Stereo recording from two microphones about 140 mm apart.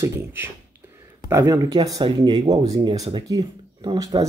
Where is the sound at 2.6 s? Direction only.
50° right (ahead or behind).